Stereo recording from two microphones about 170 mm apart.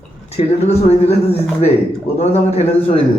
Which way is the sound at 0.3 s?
40° left (ahead or behind).